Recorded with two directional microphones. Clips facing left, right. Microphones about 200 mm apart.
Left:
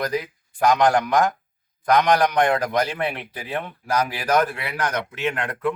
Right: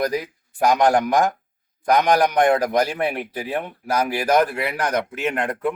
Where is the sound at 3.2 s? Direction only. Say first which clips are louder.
Right 4 dB; 40° right (ahead or behind).